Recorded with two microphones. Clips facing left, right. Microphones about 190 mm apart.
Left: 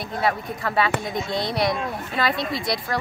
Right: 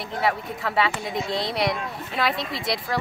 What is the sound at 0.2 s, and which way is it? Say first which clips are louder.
Speech: left 1 dB; centre (ahead or behind).